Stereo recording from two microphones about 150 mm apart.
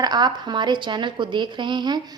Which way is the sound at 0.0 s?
30° right (ahead or behind).